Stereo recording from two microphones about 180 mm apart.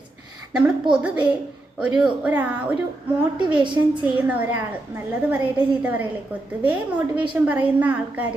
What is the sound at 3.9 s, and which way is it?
A woman's voice, 10° right (ahead or behind).